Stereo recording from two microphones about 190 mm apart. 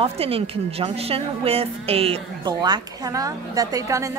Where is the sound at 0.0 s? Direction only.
30° right (ahead or behind).